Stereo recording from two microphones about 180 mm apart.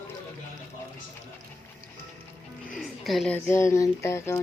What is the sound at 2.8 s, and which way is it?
Music, centre (ahead or behind).